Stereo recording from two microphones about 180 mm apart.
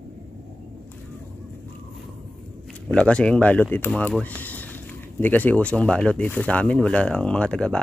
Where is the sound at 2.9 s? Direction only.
5° left (ahead or behind).